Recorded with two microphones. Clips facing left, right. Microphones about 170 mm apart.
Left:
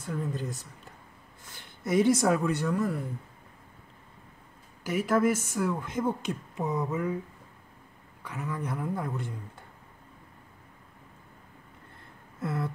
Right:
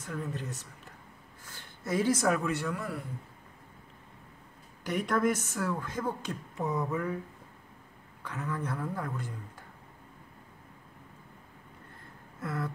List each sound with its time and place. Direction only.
0.0 s speech: 30° left (ahead or behind)
1.4 s speech: 20° left (ahead or behind); by 3.0 s 40° left (ahead or behind)
4.8 s speech: 5° left (ahead or behind)
8.2 s speech: 15° left (ahead or behind)
12.4 s a sound: 25° left (ahead or behind)